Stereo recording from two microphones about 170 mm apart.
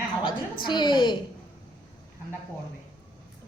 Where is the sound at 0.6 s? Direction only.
25° left (ahead or behind).